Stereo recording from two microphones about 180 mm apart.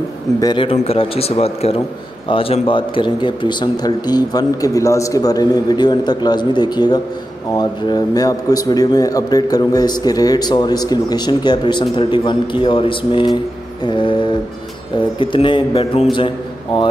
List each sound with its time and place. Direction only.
0.4 s a man's voice: 25° left (ahead or behind)